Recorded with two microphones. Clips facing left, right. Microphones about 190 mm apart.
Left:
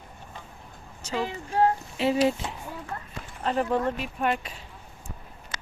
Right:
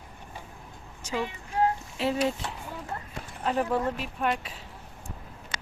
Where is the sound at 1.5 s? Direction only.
35° left (ahead or behind).